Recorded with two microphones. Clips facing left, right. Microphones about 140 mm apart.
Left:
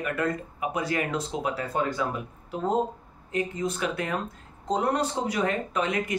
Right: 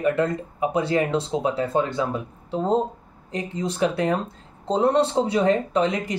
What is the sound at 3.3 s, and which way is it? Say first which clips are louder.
Speech: right 1 dB; 30° right (ahead or behind).